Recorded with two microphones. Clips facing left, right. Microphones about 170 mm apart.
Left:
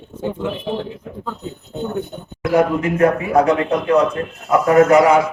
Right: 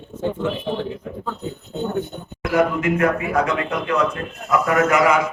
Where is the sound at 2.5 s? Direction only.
30° left (ahead or behind).